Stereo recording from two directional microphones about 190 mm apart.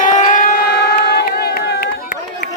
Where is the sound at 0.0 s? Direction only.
40° left (ahead or behind).